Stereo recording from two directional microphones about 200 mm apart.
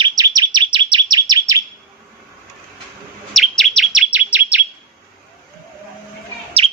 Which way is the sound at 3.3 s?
Centre (ahead or behind).